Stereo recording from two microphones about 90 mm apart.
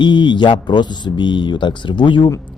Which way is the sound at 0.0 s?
60° left (ahead or behind).